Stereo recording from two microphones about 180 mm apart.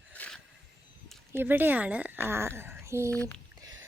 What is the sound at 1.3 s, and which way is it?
Speech, 10° right (ahead or behind).